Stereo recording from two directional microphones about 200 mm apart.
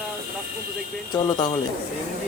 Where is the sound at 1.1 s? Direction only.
20° left (ahead or behind).